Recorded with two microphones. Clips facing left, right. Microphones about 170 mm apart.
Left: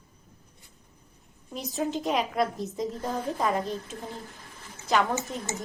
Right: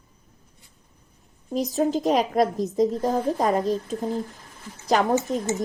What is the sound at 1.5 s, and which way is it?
A woman's voice, 40° right (ahead or behind).